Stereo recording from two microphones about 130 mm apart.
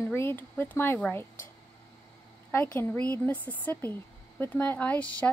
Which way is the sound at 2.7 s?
10° left (ahead or behind).